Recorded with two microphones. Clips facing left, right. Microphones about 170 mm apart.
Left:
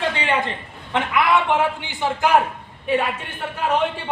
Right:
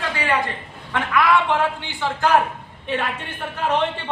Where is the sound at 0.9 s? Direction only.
20° left (ahead or behind).